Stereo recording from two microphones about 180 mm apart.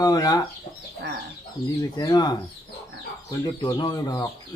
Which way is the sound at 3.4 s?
20° left (ahead or behind).